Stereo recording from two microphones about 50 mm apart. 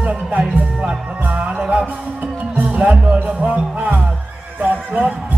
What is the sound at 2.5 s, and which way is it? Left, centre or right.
Speech, right.